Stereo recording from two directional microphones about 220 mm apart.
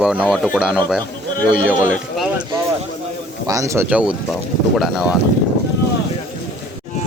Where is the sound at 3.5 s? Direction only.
15° right (ahead or behind).